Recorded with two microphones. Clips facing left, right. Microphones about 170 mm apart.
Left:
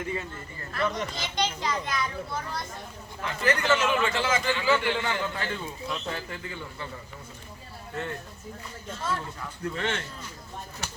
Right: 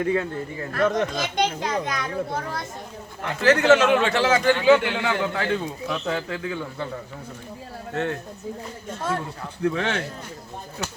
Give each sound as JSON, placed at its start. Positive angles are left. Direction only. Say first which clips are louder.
{"t": 0.0, "sound": "speech", "louder": "right 10 dB", "side_deg": -85}
{"t": 0.7, "sound": "a child's voice", "louder": "right 7 dB", "side_deg": -50}
{"t": 3.2, "sound": "a man's voice", "louder": "right 7 dB", "side_deg": -65}
{"t": 8.9, "sound": "speech", "louder": "right 4 dB", "side_deg": -55}
{"t": 9.6, "sound": "a man's voice", "louder": "right 7 dB", "side_deg": -70}